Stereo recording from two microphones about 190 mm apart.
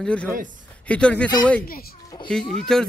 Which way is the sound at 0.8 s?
5° left (ahead or behind).